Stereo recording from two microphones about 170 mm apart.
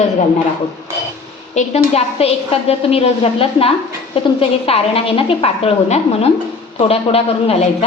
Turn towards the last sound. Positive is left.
turn(degrees=35)  # may be behind; listen again after turning